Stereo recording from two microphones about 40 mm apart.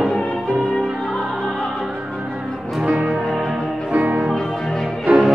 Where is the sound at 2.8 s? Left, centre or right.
Right.